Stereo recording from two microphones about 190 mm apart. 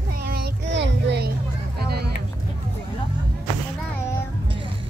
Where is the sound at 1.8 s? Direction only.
55° right (ahead or behind).